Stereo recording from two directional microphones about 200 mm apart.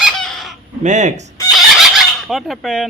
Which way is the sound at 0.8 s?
35° right (ahead or behind).